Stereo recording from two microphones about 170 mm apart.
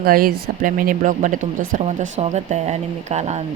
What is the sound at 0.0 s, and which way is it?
Speech, 60° right (ahead or behind).